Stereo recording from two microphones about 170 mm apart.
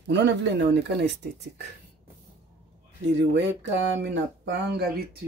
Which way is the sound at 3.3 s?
90° right.